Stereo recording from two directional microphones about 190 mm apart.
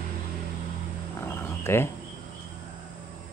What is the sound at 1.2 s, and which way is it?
Wild animals, 15° left (ahead or behind).